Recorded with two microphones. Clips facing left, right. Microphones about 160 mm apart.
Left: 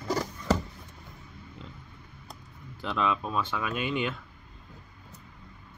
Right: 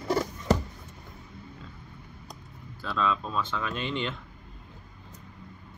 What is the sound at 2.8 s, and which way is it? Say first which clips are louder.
Speech: even; 15° left (ahead or behind).